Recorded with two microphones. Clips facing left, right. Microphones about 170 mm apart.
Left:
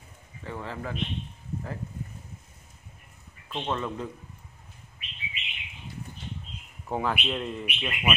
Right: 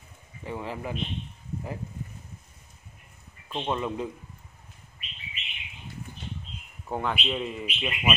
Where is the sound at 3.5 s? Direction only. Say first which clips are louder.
Right 2 dB; 15° right (ahead or behind).